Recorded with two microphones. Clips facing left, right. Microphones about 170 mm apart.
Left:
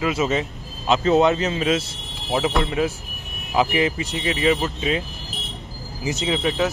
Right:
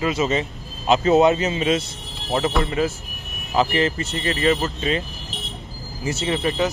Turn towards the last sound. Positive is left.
turn(degrees=0)  # may be behind; listen again after turning